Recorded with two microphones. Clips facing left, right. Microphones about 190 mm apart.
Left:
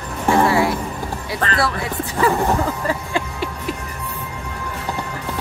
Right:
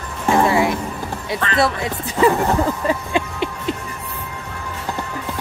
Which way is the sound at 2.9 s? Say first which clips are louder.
Right 2 dB; 20° right (ahead or behind).